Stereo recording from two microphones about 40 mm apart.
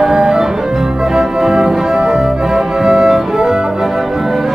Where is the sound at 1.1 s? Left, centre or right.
Centre.